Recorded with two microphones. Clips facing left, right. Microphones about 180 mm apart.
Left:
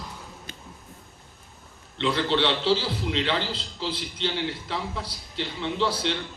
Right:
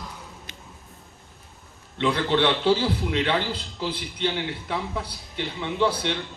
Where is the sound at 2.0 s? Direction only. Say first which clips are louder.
Right 2 dB; 55° right (ahead or behind).